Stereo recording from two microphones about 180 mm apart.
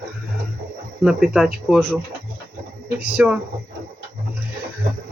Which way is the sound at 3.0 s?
5° right (ahead or behind).